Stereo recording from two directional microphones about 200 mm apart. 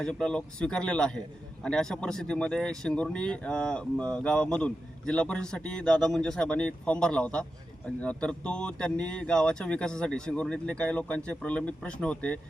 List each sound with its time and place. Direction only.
0.0 s speech: 5° left (ahead or behind)